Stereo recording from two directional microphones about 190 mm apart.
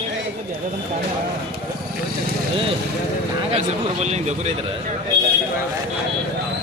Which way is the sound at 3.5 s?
35° right (ahead or behind).